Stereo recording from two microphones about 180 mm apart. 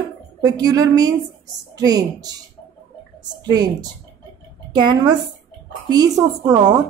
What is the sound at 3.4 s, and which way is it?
A woman's voice, 20° right (ahead or behind).